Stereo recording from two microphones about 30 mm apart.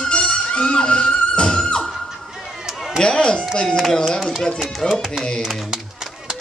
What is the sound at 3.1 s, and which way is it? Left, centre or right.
Chopping, left.